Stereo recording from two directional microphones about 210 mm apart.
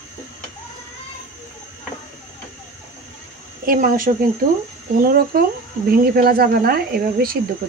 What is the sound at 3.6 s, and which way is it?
Speech, 40° right (ahead or behind).